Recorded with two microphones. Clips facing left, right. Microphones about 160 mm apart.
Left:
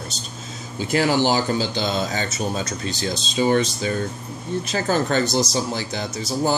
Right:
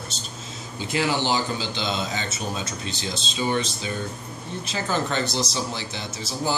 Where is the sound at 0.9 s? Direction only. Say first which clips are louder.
Left 5 dB; 45° left (ahead or behind).